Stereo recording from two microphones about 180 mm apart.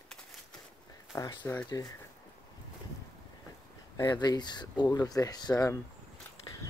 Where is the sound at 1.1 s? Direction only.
15° left (ahead or behind).